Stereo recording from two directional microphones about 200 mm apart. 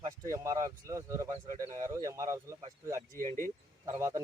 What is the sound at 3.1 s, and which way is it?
Speech, 15° left (ahead or behind).